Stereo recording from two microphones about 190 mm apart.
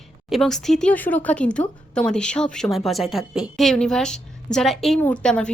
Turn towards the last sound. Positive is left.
turn(degrees=5)  # may be behind; listen again after turning